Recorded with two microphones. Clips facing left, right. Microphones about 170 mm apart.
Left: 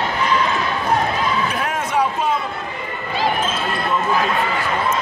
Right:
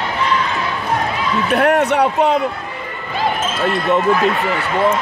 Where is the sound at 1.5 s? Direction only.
70° right (ahead or behind).